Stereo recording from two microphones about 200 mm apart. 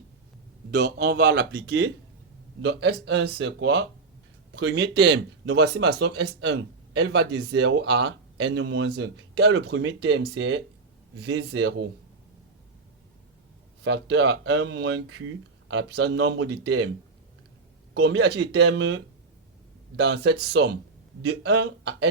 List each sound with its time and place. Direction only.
0.7 s speech: 55° right (ahead or behind)
13.8 s speech: 60° right (ahead or behind)
17.9 s speech: 60° right (ahead or behind)